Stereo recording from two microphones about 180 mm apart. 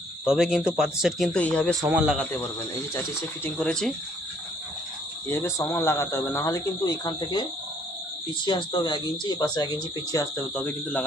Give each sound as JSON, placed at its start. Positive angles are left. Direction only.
{"t": 0.3, "sound": "speech", "side_deg": 0}
{"t": 1.9, "sound": "speech", "side_deg": -5}
{"t": 2.9, "sound": "speech", "side_deg": 15}
{"t": 5.3, "sound": "speech", "side_deg": 15}
{"t": 8.4, "sound": "speech", "side_deg": 25}
{"t": 10.5, "sound": "speech", "side_deg": 5}